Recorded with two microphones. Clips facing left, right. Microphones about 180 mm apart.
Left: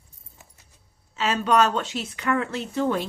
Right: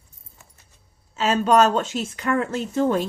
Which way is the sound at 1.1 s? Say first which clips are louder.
Right 3 dB; 40° right (ahead or behind).